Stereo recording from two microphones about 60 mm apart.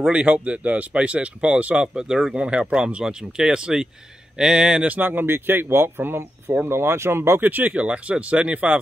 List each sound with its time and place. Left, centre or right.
0.1 s speech: centre
2.0 s speech: centre
4.8 s speech: right
7.4 s speech: right